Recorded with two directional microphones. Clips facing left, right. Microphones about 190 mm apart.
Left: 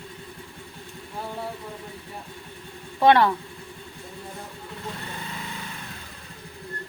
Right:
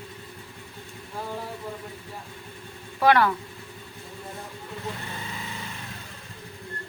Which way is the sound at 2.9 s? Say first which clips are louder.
Left 2 dB; 25° left (ahead or behind).